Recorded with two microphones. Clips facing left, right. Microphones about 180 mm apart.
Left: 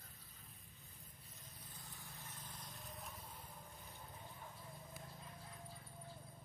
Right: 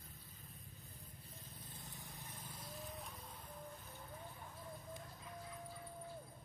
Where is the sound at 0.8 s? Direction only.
30° right (ahead or behind); by 3.5 s centre (ahead or behind).